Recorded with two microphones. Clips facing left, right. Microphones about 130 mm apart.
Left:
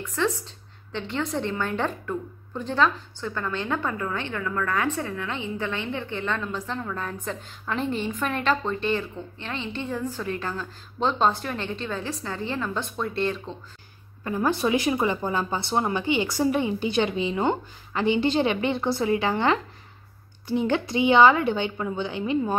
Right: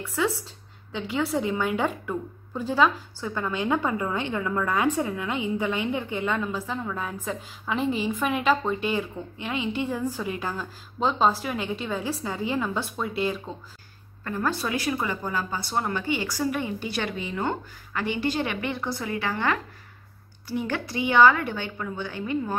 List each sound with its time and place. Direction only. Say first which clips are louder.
0.0 s a woman's voice: even; 10° right (ahead or behind)
14.2 s speech: left 4 dB; 15° left (ahead or behind)